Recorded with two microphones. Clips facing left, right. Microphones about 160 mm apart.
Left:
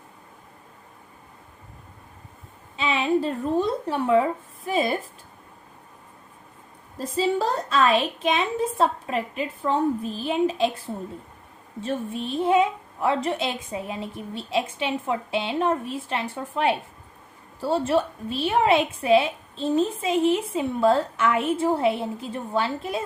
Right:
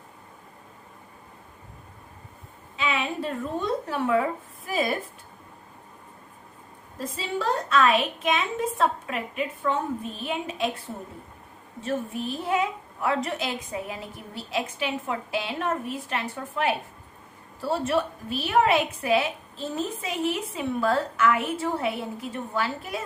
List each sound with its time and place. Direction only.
2.7 s a woman's voice: 30° left (ahead or behind)
7.0 s a woman's voice: 35° left (ahead or behind)
11.8 s a woman's voice: 25° left (ahead or behind)